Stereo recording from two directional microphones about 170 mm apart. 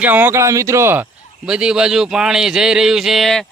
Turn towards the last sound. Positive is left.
turn(degrees=0)  # may be behind; listen again after turning